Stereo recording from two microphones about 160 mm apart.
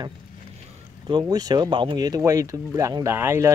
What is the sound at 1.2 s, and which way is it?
Speech, 25° right (ahead or behind).